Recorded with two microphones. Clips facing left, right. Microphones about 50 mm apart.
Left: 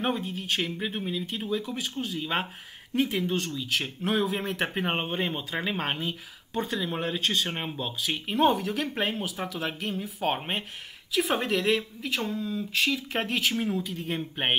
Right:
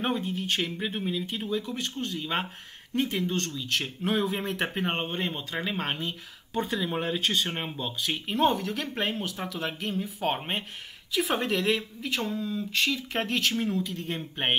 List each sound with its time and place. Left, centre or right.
0.0 s speech: centre